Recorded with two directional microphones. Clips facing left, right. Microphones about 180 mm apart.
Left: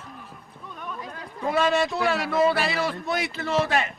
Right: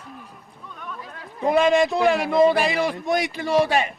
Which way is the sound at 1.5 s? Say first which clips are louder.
Right 5 dB; 15° right (ahead or behind).